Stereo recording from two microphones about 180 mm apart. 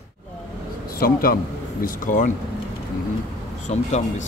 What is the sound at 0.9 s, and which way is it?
Speech, 55° left (ahead or behind).